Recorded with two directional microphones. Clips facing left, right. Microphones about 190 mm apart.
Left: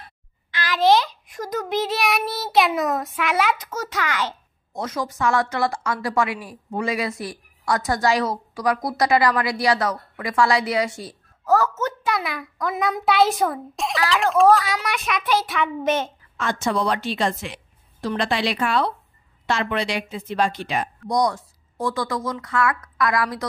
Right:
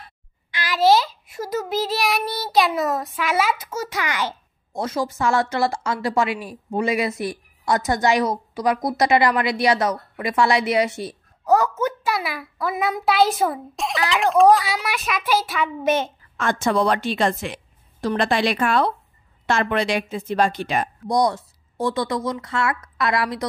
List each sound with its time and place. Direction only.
0.5 s a child's voice: 10° right (ahead or behind)
4.7 s a woman's voice: 30° right (ahead or behind); by 16.1 s 10° right (ahead or behind)
16.3 s speech: 50° right (ahead or behind)
21.1 s a woman's voice: 30° right (ahead or behind)